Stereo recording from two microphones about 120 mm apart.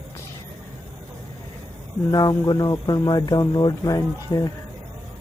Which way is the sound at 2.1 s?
35° left (ahead or behind).